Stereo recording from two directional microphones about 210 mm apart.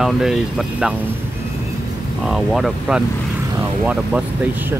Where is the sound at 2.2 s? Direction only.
Centre (ahead or behind).